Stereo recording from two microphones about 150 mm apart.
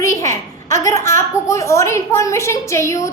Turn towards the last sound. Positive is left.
turn(degrees=20)  # may be behind; listen again after turning